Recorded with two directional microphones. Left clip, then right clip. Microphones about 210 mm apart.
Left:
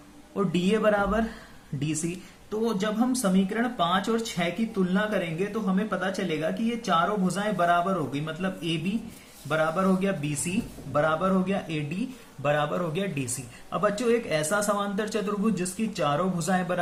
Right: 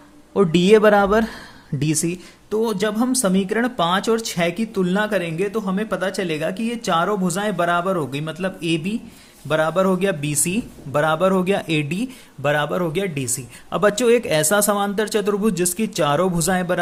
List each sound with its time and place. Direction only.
0.3 s speech: 45° right (ahead or behind)